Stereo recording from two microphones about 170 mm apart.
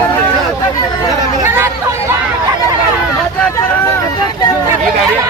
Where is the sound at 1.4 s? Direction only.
15° right (ahead or behind).